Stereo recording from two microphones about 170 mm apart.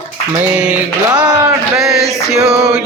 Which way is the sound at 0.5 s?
10° right (ahead or behind).